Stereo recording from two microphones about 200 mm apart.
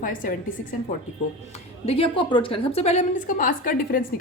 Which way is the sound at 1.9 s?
25° left (ahead or behind).